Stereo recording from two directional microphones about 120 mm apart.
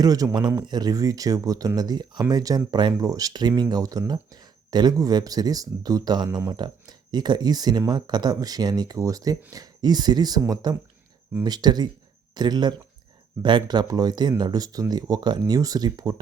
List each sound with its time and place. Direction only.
0.0 s speech: 30° right (ahead or behind)